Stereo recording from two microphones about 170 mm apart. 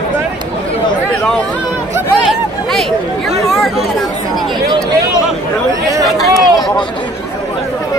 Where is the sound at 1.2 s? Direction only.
5° left (ahead or behind).